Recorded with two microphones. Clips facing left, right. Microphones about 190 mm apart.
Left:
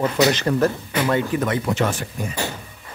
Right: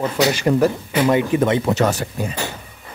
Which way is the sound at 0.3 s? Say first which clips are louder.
Right 3 dB; 10° right (ahead or behind).